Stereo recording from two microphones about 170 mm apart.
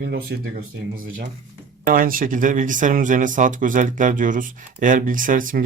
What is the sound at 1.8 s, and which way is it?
Speech, 55° right (ahead or behind).